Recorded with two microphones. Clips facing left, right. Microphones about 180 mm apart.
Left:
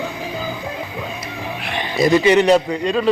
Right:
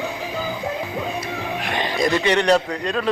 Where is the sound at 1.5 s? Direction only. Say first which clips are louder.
Right 1 dB; 40° right (ahead or behind).